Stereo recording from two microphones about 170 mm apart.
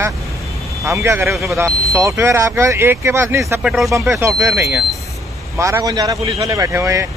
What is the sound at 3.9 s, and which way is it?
A man's voice, 15° right (ahead or behind).